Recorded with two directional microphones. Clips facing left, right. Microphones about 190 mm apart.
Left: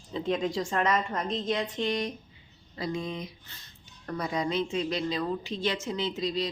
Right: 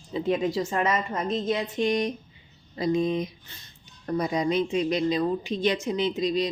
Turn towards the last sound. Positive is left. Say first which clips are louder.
# right 5 dB
turn(degrees=-15)  # may be behind; listen again after turning